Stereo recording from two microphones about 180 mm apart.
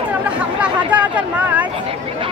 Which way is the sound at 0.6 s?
10° right (ahead or behind).